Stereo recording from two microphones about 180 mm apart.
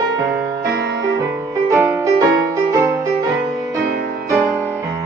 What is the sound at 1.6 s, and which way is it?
Music, 15° right (ahead or behind).